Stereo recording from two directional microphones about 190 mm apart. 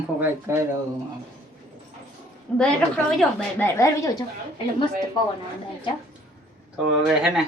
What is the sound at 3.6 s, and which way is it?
Speech, 15° left (ahead or behind).